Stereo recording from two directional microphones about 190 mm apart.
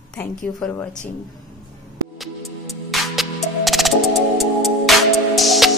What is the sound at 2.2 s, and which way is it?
Music, centre (ahead or behind).